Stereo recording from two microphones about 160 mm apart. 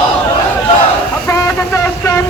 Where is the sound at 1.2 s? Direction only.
20° left (ahead or behind).